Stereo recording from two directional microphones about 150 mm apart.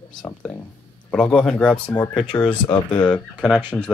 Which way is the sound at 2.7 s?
35° left (ahead or behind).